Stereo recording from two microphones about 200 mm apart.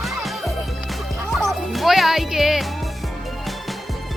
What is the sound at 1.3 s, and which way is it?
Music, centre (ahead or behind).